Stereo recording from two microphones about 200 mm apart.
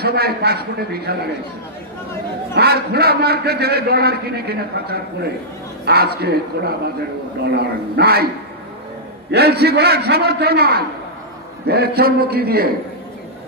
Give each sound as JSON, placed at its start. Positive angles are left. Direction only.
{"t": 0.0, "sound": "a man's voice", "side_deg": -55}
{"t": 2.5, "sound": "a man's voice", "side_deg": -55}
{"t": 9.3, "sound": "a man's voice", "side_deg": -55}